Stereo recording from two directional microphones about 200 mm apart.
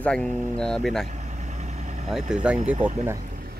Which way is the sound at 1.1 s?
35° right (ahead or behind).